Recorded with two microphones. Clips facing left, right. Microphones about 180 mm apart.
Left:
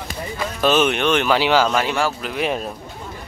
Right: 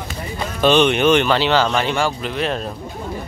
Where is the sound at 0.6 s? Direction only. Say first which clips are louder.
Right 3 dB; 5° left (ahead or behind).